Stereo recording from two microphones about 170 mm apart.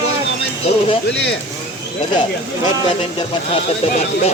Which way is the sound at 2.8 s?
30° left (ahead or behind).